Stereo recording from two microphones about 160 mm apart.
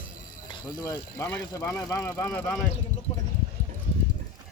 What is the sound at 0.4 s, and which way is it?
Speech, 25° left (ahead or behind).